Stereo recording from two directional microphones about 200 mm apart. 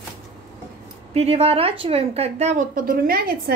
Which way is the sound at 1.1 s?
30° right (ahead or behind).